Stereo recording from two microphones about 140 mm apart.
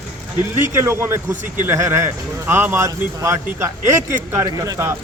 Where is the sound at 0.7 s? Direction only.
20° right (ahead or behind).